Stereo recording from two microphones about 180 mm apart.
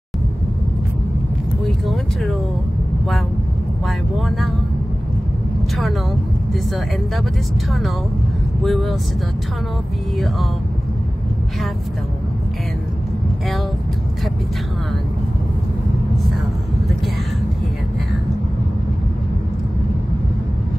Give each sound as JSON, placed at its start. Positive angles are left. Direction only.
{"t": 3.8, "sound": "speech", "side_deg": 0}
{"t": 8.6, "sound": "speech", "side_deg": 0}